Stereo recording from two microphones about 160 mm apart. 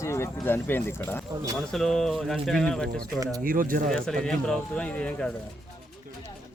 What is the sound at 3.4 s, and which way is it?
Speech, 60° right (ahead or behind).